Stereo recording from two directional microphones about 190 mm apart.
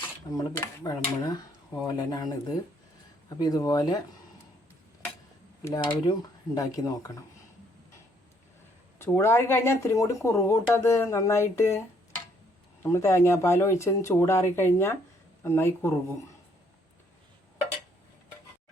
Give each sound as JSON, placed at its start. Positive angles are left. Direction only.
{"t": 0.3, "sound": "speech", "side_deg": 20}
{"t": 5.6, "sound": "speech", "side_deg": 20}
{"t": 9.0, "sound": "speech", "side_deg": 10}
{"t": 12.8, "sound": "speech", "side_deg": 15}